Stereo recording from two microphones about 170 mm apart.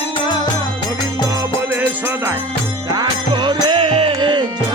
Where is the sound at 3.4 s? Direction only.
30° right (ahead or behind).